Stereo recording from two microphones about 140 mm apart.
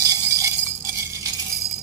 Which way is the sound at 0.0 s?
20° right (ahead or behind).